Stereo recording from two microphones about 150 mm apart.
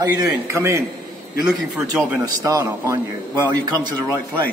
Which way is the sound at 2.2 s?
20° right (ahead or behind).